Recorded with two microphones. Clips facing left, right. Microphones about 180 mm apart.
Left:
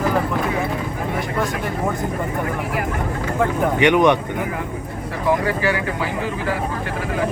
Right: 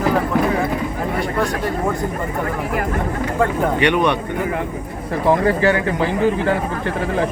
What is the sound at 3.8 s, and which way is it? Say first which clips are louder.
Speech: left 4 dB; 20° left (ahead or behind).